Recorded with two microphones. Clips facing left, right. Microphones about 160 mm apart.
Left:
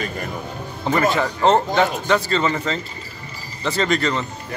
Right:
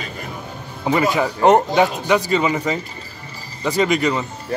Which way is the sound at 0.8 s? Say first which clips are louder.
Right 1 dB; 10° right (ahead or behind).